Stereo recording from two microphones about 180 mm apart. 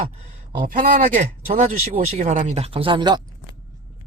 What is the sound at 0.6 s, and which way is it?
Speech, 50° right (ahead or behind).